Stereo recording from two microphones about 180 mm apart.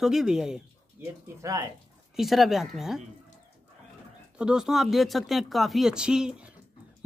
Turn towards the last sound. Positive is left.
turn(degrees=-5)  # may be behind; listen again after turning